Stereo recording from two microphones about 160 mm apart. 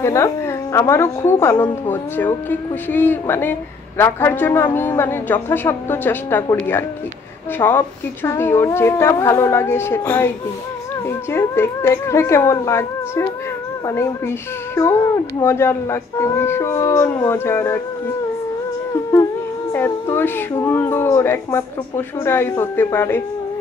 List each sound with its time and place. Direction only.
0.0 s a woman's voice: 20° left (ahead or behind)
7.5 s a woman's voice: 15° left (ahead or behind)
19.7 s a woman's voice: 15° left (ahead or behind)